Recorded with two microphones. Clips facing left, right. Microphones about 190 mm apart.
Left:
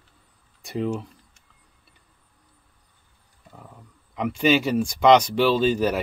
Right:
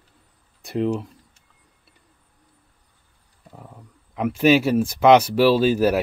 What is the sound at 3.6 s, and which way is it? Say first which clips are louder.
Speech: right 2 dB; 5° right (ahead or behind).